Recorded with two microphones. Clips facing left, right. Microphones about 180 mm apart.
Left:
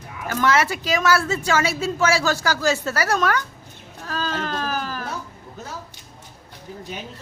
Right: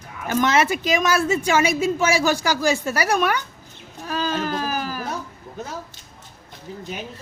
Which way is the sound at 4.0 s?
15° right (ahead or behind).